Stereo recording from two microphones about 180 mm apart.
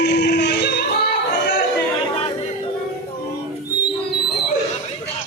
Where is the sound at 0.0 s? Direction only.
70° left (ahead or behind).